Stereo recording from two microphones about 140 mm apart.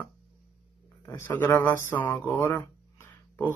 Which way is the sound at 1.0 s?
20° left (ahead or behind).